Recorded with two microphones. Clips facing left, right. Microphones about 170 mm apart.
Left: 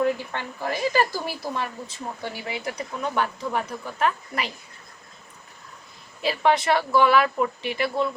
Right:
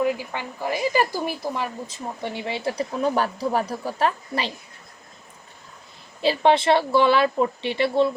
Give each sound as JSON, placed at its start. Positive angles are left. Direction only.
{"t": 0.0, "sound": "a woman's voice", "side_deg": -15}
{"t": 6.2, "sound": "speech", "side_deg": -30}